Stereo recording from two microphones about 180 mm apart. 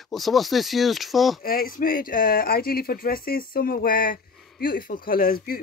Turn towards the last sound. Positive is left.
turn(degrees=55)  # may be behind; listen again after turning